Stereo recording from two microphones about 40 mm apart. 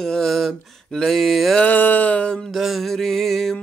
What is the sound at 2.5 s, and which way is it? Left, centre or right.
Mantra, centre.